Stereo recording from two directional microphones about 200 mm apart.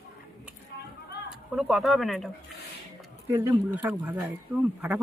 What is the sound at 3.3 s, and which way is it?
Speech, 10° right (ahead or behind).